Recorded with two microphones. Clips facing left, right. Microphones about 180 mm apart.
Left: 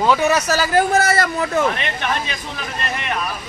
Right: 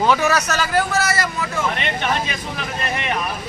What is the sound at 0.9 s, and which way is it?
Speech, 55° left (ahead or behind).